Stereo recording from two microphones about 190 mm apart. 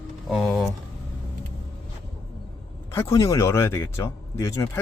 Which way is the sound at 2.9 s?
15° left (ahead or behind).